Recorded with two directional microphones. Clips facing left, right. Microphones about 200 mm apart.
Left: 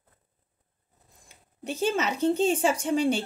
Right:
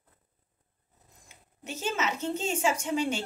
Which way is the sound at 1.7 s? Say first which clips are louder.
Left 5 dB; 35° left (ahead or behind).